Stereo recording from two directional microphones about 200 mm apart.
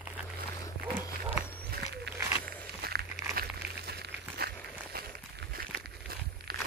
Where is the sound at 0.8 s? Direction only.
10° right (ahead or behind).